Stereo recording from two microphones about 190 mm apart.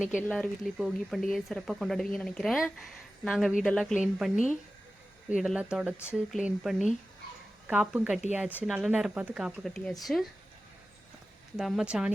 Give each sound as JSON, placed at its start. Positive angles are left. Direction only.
{"t": 0.3, "sound": "speech", "side_deg": 0}
{"t": 8.4, "sound": "speech", "side_deg": 10}
{"t": 8.7, "sound": "speech", "side_deg": -5}
{"t": 11.5, "sound": "speech", "side_deg": -5}